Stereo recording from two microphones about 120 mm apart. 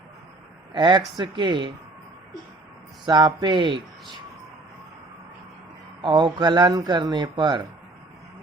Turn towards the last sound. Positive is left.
turn(degrees=-40)  # may be behind; listen again after turning